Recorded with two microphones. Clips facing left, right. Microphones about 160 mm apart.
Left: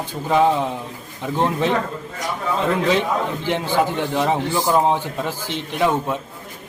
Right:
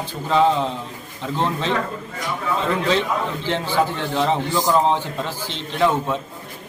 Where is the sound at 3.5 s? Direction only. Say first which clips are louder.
Left 1 dB; 15° left (ahead or behind).